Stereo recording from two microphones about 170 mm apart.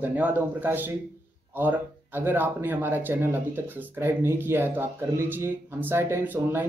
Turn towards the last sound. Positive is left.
turn(degrees=-10)  # may be behind; listen again after turning